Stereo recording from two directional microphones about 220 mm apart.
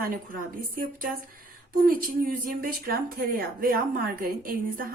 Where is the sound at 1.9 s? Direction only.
40° right (ahead or behind).